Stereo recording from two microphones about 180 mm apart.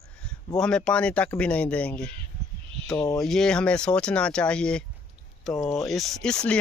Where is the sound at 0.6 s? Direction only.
5° left (ahead or behind).